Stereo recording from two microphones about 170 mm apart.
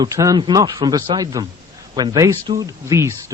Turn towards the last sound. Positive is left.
turn(degrees=-15)  # may be behind; listen again after turning